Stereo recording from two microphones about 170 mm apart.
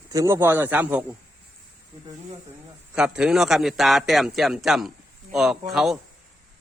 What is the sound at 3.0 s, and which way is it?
A man's voice, 5° right (ahead or behind).